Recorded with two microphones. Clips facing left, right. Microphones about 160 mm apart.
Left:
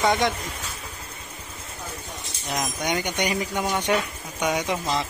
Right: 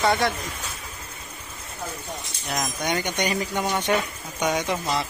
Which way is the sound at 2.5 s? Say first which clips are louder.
Even; 15° left (ahead or behind).